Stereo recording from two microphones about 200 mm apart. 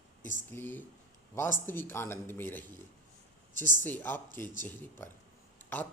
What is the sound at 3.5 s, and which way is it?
Speech, 40° right (ahead or behind).